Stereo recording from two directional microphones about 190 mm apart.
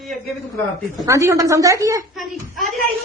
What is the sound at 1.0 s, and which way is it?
A woman's voice, 15° right (ahead or behind).